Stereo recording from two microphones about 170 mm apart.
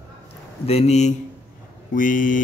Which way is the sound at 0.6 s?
40° left (ahead or behind).